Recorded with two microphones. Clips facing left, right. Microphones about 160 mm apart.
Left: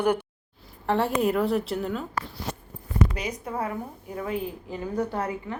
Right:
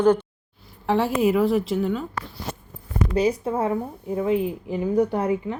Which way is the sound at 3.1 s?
30° right (ahead or behind).